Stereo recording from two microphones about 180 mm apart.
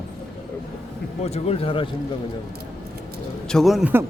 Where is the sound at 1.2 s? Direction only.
35° left (ahead or behind).